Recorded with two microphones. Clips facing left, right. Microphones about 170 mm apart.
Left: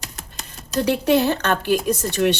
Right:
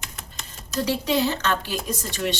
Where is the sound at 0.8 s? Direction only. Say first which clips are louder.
Left 5 dB; 60° left (ahead or behind).